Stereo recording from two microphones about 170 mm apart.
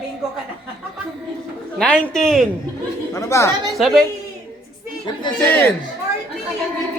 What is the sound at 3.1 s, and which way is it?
Speech, 15° left (ahead or behind).